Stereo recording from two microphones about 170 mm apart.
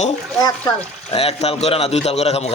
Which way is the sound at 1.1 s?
35° left (ahead or behind).